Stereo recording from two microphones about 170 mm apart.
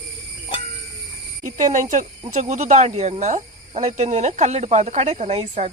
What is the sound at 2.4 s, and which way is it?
Speech, 45° right (ahead or behind).